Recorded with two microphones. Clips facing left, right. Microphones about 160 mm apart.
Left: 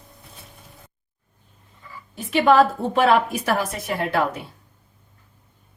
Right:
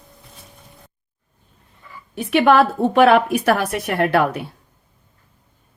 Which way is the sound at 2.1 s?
65° right (ahead or behind).